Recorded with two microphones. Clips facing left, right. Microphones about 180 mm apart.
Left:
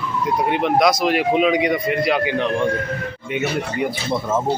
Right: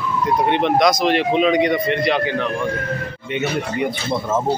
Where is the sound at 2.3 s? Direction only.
20° left (ahead or behind).